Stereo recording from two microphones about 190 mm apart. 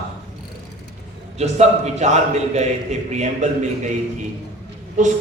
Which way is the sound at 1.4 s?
35° right (ahead or behind).